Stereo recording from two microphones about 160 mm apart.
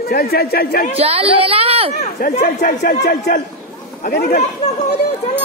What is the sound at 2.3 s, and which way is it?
Speech, 50° left (ahead or behind).